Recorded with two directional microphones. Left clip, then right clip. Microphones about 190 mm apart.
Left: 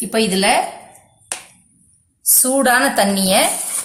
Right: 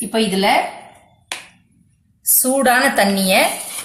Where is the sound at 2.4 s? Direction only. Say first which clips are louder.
Even; 15° left (ahead or behind).